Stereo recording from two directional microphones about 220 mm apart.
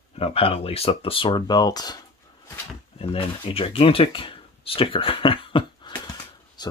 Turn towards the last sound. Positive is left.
turn(degrees=20)  # may be behind; listen again after turning